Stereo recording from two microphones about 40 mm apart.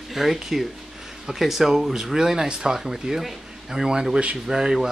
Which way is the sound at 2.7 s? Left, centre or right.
Centre.